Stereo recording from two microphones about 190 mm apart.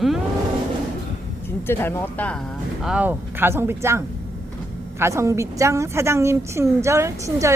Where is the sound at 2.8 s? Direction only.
5° right (ahead or behind).